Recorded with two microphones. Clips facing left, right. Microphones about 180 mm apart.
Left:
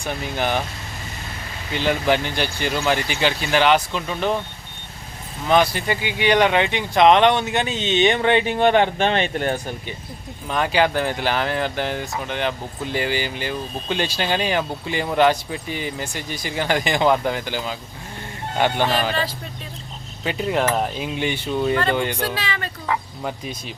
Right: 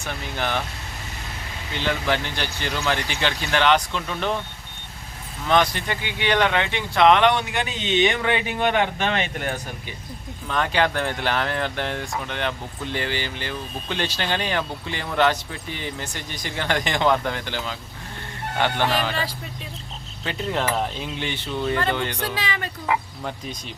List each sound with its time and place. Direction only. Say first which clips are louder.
0.0 s speech: left 4 dB; 15° left (ahead or behind)
1.7 s speech: left 4 dB; 15° left (ahead or behind)
5.5 s speech: left 3 dB; 10° left (ahead or behind); by 9.6 s 30° left (ahead or behind)
10.5 s speech: left 3 dB; 10° left (ahead or behind)
20.2 s speech: left 4 dB; 10° left (ahead or behind)
22.2 s speech: left 2 dB; 15° right (ahead or behind)